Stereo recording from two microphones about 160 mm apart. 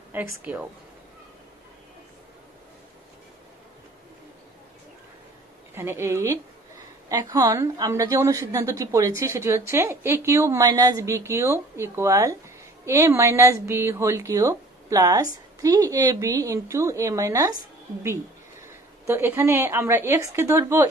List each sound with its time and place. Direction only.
0.1 s a woman's voice: 10° right (ahead or behind)
5.8 s a woman's voice: 15° right (ahead or behind)
19.0 s a woman's voice: 15° right (ahead or behind)